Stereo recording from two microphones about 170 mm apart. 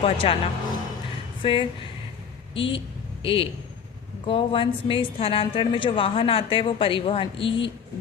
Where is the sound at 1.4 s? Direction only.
30° left (ahead or behind).